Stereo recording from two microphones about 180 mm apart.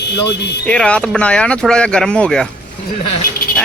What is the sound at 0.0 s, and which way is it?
Speech, 65° left (ahead or behind).